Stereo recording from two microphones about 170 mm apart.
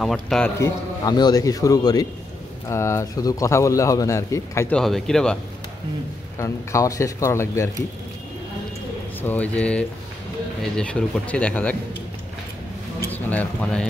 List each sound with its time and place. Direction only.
0.0 s speech: centre (ahead or behind)
0.6 s a man's voice: 25° left (ahead or behind)
4.7 s speech: 5° left (ahead or behind)
6.3 s a man's voice: 15° left (ahead or behind)
9.2 s a man's voice: 10° left (ahead or behind)
13.0 s speech: 10° left (ahead or behind)